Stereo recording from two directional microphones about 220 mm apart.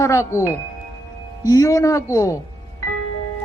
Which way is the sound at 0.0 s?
15° left (ahead or behind).